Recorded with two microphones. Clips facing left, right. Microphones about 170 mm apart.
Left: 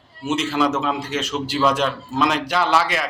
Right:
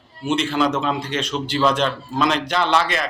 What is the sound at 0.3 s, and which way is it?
A man's voice, 5° left (ahead or behind).